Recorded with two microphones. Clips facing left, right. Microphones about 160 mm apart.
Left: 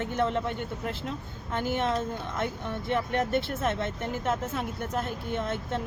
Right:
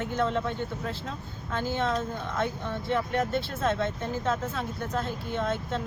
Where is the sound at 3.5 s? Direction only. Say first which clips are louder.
Right 1 dB; 20° left (ahead or behind).